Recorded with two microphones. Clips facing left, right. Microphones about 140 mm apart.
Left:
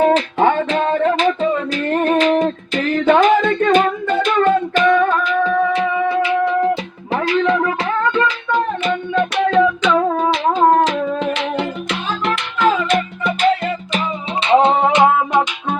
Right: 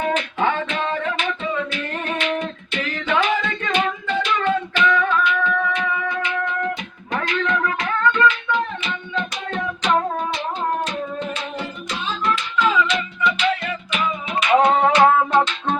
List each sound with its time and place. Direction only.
0.0 s music: 40° left (ahead or behind)
8.4 s music: 45° left (ahead or behind); by 9.6 s 75° left (ahead or behind)
10.2 s music: 90° left; by 13.6 s 45° left (ahead or behind)
14.4 s music: 25° left (ahead or behind)